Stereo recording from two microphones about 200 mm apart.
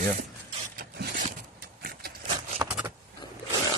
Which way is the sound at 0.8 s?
45° right (ahead or behind).